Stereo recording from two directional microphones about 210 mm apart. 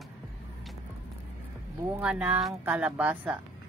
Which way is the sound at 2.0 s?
5° right (ahead or behind).